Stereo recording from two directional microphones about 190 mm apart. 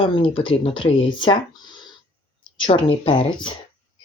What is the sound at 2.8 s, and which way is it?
Speech, 25° left (ahead or behind).